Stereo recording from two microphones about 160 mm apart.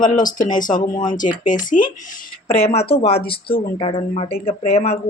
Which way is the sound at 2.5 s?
40° left (ahead or behind).